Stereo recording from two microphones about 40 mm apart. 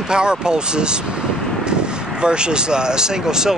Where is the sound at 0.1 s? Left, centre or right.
Right.